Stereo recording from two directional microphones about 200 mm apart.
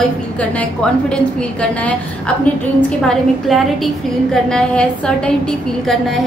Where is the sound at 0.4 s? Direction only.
5° left (ahead or behind).